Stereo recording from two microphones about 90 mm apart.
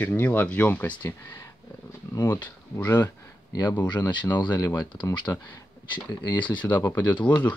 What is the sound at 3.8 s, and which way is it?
Speech, 55° left (ahead or behind).